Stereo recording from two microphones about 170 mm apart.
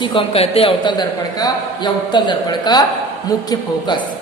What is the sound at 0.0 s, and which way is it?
A man's voice, 30° left (ahead or behind).